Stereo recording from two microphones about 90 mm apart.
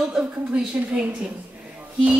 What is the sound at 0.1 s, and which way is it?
Speech, 5° right (ahead or behind).